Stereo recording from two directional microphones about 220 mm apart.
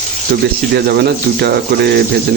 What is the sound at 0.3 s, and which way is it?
Speech, 50° right (ahead or behind).